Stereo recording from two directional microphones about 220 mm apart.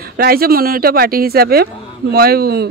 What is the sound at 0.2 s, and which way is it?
Speech, 45° right (ahead or behind).